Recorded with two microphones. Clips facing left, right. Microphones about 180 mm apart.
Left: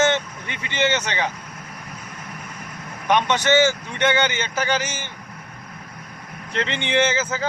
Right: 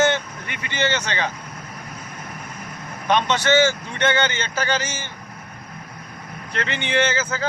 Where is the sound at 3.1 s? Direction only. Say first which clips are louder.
Even; 15° left (ahead or behind).